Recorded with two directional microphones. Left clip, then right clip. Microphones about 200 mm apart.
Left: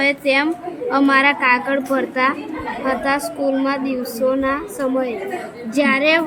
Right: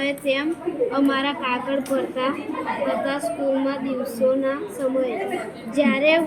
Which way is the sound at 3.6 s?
45° left (ahead or behind).